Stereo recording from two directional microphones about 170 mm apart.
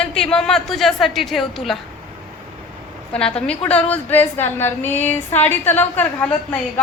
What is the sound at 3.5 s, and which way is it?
Speech, 10° left (ahead or behind).